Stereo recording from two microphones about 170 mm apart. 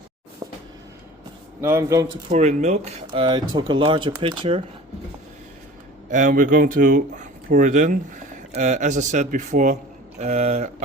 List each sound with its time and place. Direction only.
1.6 s speech: 15° right (ahead or behind)
2.3 s speech: 45° right (ahead or behind)
3.2 s speech: 30° right (ahead or behind)
6.1 s speech: 50° right (ahead or behind)